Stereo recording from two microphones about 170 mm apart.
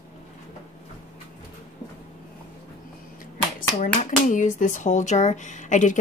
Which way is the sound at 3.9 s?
50° left (ahead or behind).